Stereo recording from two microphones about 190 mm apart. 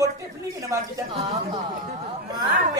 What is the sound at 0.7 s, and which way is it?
Speech, 15° right (ahead or behind).